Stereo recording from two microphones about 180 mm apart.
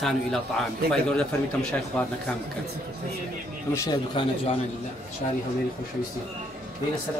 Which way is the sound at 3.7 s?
25° left (ahead or behind).